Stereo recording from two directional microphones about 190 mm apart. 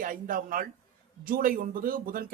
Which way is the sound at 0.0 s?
45° right (ahead or behind).